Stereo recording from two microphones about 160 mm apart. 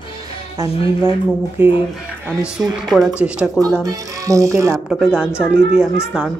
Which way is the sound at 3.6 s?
20° right (ahead or behind).